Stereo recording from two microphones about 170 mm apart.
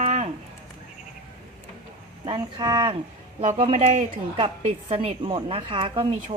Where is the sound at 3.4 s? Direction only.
50° right (ahead or behind).